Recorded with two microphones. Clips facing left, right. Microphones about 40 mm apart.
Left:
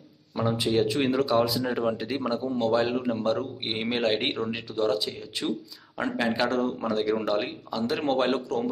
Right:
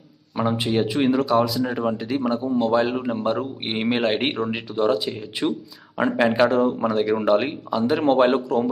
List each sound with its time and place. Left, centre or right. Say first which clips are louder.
0.4 s speech: right 4 dB; right
0.7 s speech: right 3 dB; centre